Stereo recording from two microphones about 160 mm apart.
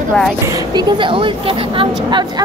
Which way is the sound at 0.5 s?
30° right (ahead or behind).